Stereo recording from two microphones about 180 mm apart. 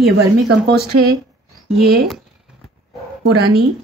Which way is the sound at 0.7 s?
65° right (ahead or behind).